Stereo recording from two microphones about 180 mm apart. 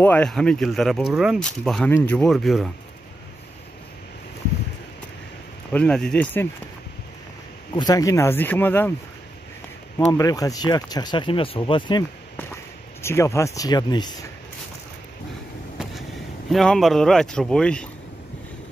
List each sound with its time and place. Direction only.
0.0 s speech: 5° left (ahead or behind)
5.7 s speech: 5° left (ahead or behind)
7.7 s speech: 20° left (ahead or behind)
9.9 s speech: 20° left (ahead or behind)
13.0 s speech: 15° left (ahead or behind)
16.5 s speech: centre (ahead or behind)